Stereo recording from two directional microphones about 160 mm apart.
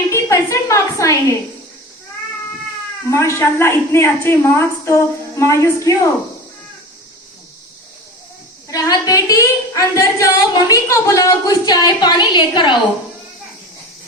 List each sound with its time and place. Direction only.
0.1 s a woman's voice: 20° left (ahead or behind)
3.1 s a woman's voice: 15° left (ahead or behind)
8.7 s a woman's voice: 25° left (ahead or behind)